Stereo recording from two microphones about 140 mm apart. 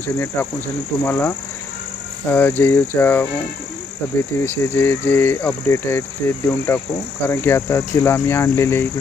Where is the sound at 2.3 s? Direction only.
15° left (ahead or behind).